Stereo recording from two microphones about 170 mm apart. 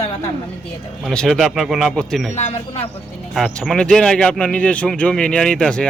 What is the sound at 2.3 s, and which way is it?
Speech, 40° left (ahead or behind).